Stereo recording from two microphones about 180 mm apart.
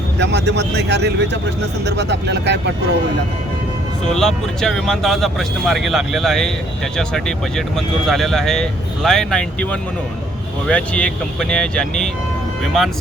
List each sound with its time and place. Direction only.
0.2 s speech: 70° right (ahead or behind)
4.1 s speech: centre (ahead or behind)
10.7 s speech: 5° left (ahead or behind)